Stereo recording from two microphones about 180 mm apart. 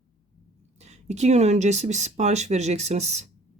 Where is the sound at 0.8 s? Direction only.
40° right (ahead or behind).